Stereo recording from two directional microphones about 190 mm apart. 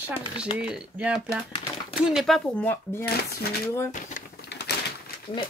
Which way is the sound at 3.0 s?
55° left (ahead or behind).